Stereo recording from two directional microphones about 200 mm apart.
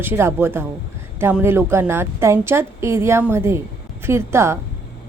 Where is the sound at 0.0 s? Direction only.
10° right (ahead or behind).